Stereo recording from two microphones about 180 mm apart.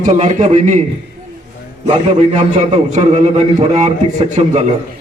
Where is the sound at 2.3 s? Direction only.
40° right (ahead or behind).